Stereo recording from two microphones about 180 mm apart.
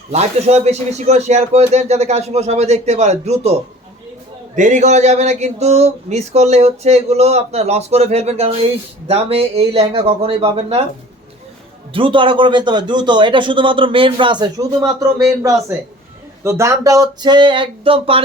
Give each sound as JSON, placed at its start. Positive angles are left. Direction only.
{"t": 0.1, "sound": "speech", "side_deg": -35}
{"t": 4.5, "sound": "speech", "side_deg": -45}
{"t": 11.9, "sound": "speech", "side_deg": -30}
{"t": 16.4, "sound": "speech", "side_deg": -15}